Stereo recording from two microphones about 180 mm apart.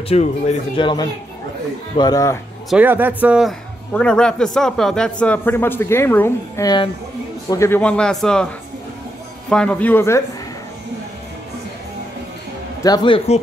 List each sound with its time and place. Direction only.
0.1 s speech: 40° left (ahead or behind)
0.7 s speech: 25° left (ahead or behind)
2.7 s a man's voice: 10° right (ahead or behind)
9.5 s a man's voice: 5° left (ahead or behind)
12.8 s speech: 25° left (ahead or behind)